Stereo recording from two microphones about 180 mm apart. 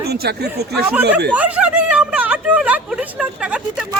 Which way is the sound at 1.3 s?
10° right (ahead or behind).